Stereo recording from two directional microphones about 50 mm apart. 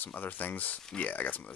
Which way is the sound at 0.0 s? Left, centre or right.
Left.